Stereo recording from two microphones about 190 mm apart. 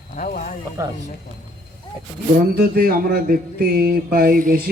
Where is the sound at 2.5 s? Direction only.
50° right (ahead or behind).